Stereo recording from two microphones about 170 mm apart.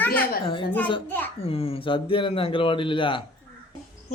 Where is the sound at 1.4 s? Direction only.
35° left (ahead or behind).